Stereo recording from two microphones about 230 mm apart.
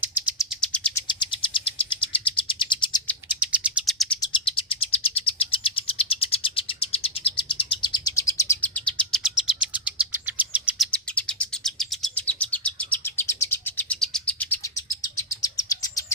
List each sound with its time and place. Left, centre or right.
0.0 s bird: centre
1.0 s bird: left
3.4 s bird: centre
4.3 s bird: left; by 10.8 s centre
10.9 s bird: centre
15.4 s chirp: centre